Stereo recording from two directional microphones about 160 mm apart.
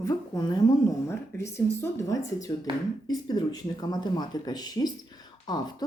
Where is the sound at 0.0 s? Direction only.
25° left (ahead or behind).